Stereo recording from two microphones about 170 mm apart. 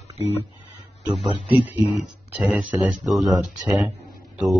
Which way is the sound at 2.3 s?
5° right (ahead or behind).